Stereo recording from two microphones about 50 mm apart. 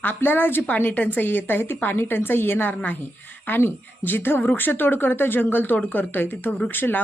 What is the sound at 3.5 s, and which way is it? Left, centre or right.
A woman's voice, left.